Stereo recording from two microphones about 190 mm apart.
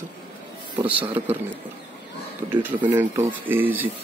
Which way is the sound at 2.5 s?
10° right (ahead or behind).